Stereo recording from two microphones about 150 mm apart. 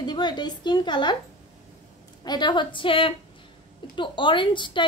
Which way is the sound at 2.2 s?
30° left (ahead or behind).